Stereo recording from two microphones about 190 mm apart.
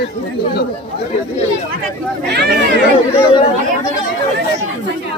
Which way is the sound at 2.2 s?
60° right (ahead or behind).